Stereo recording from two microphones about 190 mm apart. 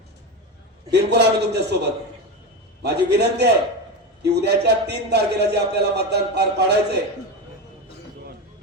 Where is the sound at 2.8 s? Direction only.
60° right (ahead or behind).